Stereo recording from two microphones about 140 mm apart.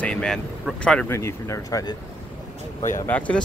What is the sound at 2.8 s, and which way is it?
Speech, 60° left (ahead or behind).